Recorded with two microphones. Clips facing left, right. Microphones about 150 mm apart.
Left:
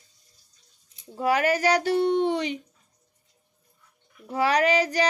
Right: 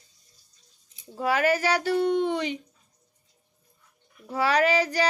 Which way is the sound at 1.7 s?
40° left (ahead or behind).